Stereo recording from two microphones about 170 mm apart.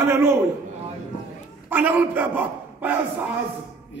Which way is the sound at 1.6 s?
10° right (ahead or behind).